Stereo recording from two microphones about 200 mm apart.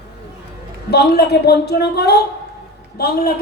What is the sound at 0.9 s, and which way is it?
A woman's voice, 55° left (ahead or behind).